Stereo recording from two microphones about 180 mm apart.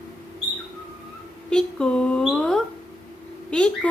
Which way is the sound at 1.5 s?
5° left (ahead or behind).